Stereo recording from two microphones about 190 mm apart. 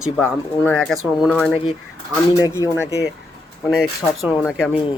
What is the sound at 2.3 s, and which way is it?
Speech, 20° left (ahead or behind).